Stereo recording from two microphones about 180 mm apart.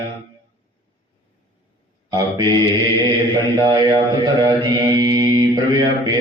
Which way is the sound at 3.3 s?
25° right (ahead or behind).